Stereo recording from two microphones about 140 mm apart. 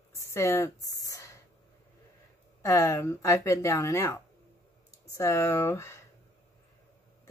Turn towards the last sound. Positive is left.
turn(degrees=20)  # may be behind; listen again after turning